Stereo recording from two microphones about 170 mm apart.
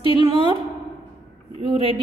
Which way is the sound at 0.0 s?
30° right (ahead or behind).